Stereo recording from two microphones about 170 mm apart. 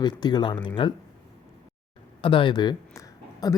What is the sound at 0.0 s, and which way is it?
Speech, 25° left (ahead or behind).